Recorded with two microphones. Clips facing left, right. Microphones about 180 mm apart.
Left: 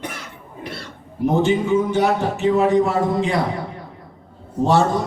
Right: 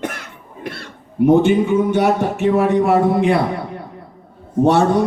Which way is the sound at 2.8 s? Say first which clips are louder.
Right 4 dB; 60° right (ahead or behind).